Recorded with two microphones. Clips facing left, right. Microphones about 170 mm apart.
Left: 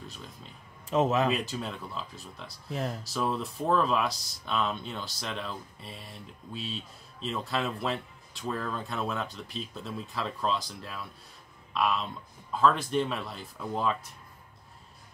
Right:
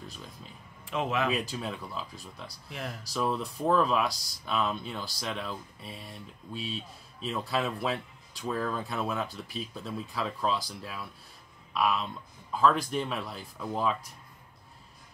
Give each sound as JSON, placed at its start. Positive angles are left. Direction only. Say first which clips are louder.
{"t": 0.8, "sound": "speech", "louder": "left 4 dB", "side_deg": 40}
{"t": 1.3, "sound": "speech", "louder": "even", "side_deg": 0}
{"t": 2.7, "sound": "speech", "louder": "left 6 dB", "side_deg": 35}
{"t": 3.0, "sound": "speech", "louder": "even", "side_deg": 0}